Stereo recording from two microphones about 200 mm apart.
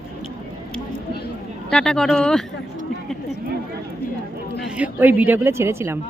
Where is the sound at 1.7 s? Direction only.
5° left (ahead or behind).